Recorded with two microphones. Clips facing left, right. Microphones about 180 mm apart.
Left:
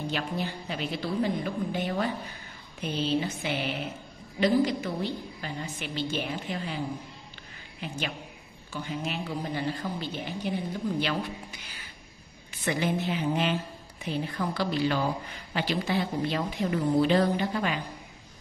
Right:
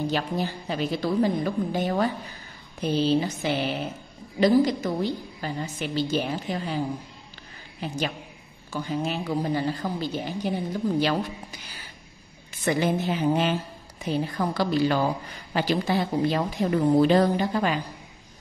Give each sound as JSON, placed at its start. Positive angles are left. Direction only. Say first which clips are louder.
{"t": 0.0, "sound": "a woman's voice", "louder": "right 5 dB", "side_deg": -40}
{"t": 7.8, "sound": "a woman's voice", "louder": "right 5 dB", "side_deg": -40}